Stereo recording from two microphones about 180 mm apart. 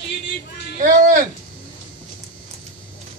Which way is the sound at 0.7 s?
45° right (ahead or behind).